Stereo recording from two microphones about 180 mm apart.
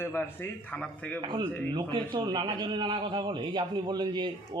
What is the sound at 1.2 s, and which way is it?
A man's voice, 25° right (ahead or behind).